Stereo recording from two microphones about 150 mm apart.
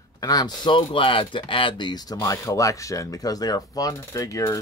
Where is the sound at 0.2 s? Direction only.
25° left (ahead or behind).